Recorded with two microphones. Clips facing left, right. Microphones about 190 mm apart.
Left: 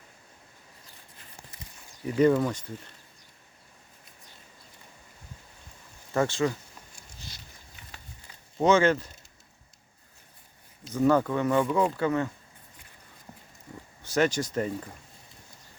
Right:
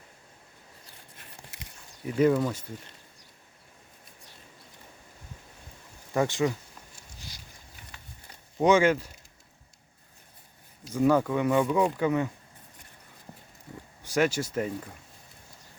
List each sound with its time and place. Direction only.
1.5 s a sound: 75° right (ahead or behind)
2.0 s speech: 5° right (ahead or behind)
6.1 s speech: 15° right (ahead or behind)
7.2 s a sound: 10° right (ahead or behind)
8.6 s speech: 10° right (ahead or behind)
10.8 s speech: 10° right (ahead or behind)
14.0 s speech: 10° right (ahead or behind)